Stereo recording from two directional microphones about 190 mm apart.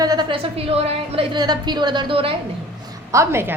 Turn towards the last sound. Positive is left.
turn(degrees=-15)  # may be behind; listen again after turning